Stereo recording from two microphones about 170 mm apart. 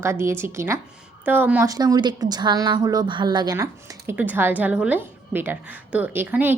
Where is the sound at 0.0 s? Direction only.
15° right (ahead or behind).